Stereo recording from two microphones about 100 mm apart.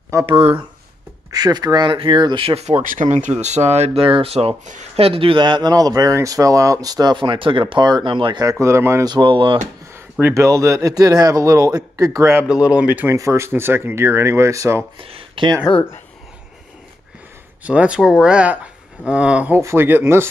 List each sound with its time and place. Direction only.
0.3 s speech: 65° right (ahead or behind)
1.3 s speech: 40° right (ahead or behind); by 2.8 s 85° right
3.0 s speech: 75° right (ahead or behind)
3.6 s speech: 90° right; by 8.5 s 55° right (ahead or behind)
8.5 s speech: 30° right (ahead or behind)
9.0 s speech: 50° right (ahead or behind)
10.2 s a man's voice: 30° right (ahead or behind)
12.7 s speech: 15° right (ahead or behind)
13.1 s speech: 30° right (ahead or behind)
15.0 s speech: 65° right (ahead or behind)
17.6 s speech: 10° right (ahead or behind)
19.6 s speech: 25° right (ahead or behind)